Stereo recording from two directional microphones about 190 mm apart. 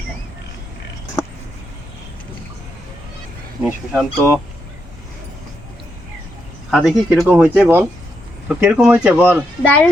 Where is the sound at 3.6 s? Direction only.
5° right (ahead or behind).